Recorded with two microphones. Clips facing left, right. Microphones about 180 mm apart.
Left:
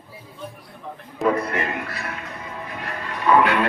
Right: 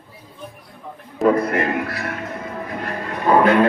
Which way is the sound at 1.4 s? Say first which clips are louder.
Right 6 dB; 50° right (ahead or behind).